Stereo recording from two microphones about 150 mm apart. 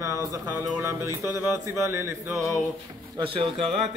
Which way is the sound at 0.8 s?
20° right (ahead or behind).